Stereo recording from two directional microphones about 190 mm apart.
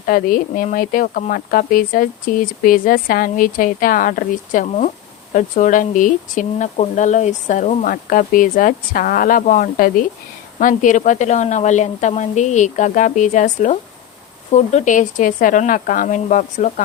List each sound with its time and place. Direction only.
0.1 s speech: 45° left (ahead or behind)